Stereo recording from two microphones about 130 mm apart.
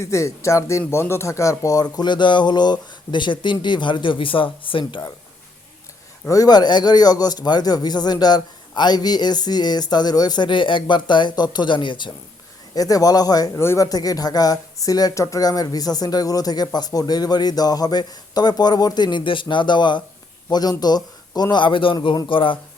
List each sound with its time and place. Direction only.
0.0 s a man's voice: 20° left (ahead or behind); by 4.9 s 40° left (ahead or behind)
6.2 s a man's voice: 25° left (ahead or behind)